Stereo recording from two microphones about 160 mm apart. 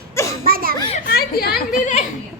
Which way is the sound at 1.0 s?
70° left (ahead or behind).